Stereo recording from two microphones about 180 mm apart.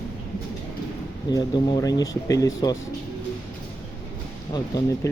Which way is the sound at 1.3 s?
25° left (ahead or behind).